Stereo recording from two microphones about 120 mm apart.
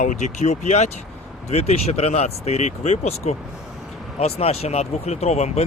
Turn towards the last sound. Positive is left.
turn(degrees=65)  # may be behind; listen again after turning